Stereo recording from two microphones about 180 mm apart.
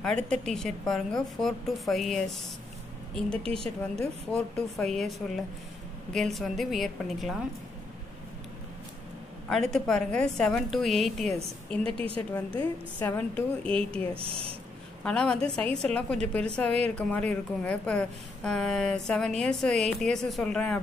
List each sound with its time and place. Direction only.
0.0 s a woman's voice: 5° left (ahead or behind)
9.5 s a woman's voice: 5° left (ahead or behind)
11.9 s speech: 30° right (ahead or behind)
13.0 s a woman's voice: 10° left (ahead or behind)
14.1 s speech: 30° right (ahead or behind)
15.0 s a woman's voice: 5° left (ahead or behind)